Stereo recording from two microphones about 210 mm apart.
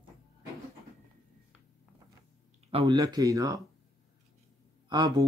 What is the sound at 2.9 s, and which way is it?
Speech, 15° right (ahead or behind).